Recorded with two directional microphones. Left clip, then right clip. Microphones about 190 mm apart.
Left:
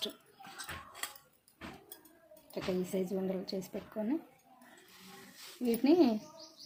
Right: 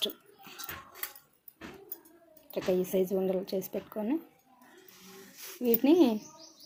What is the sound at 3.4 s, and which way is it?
Speech, 25° left (ahead or behind).